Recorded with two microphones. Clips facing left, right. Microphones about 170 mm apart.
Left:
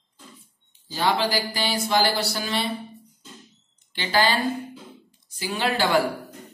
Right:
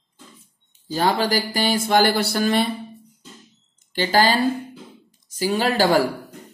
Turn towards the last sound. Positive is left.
turn(degrees=-40)  # may be behind; listen again after turning